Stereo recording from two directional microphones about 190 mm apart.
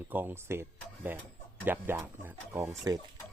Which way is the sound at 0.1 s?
10° right (ahead or behind).